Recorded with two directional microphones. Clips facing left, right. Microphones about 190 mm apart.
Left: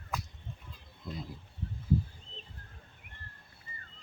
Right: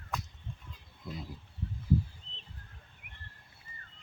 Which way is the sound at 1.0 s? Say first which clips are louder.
Left 1 dB; 10° right (ahead or behind).